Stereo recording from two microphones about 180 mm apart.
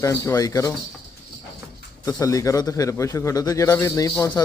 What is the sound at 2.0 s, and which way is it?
A man's voice, 20° left (ahead or behind).